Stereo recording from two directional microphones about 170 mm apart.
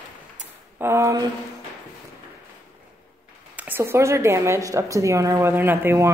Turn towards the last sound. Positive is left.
turn(degrees=-15)  # may be behind; listen again after turning